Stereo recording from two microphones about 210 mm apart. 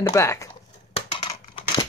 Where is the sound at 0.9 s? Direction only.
25° left (ahead or behind).